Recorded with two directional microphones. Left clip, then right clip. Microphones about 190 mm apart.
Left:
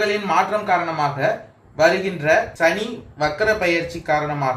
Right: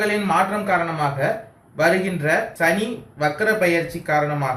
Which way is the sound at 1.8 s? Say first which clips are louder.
Left 2 dB; 50° left (ahead or behind).